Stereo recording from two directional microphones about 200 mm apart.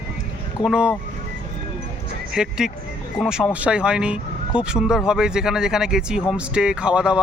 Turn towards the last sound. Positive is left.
turn(degrees=-5)  # may be behind; listen again after turning